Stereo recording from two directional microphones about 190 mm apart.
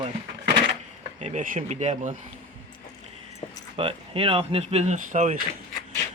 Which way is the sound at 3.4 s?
30° left (ahead or behind).